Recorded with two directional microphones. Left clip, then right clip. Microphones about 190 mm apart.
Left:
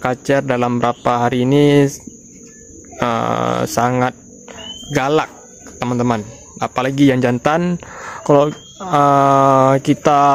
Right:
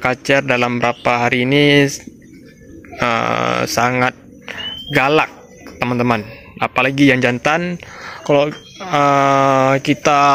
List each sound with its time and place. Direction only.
0.0 s a man's voice: 20° left (ahead or behind)
3.0 s a man's voice: 20° left (ahead or behind)
4.5 s cricket: 10° left (ahead or behind)
5.8 s a man's voice: 10° left (ahead or behind); by 10.3 s 25° left (ahead or behind)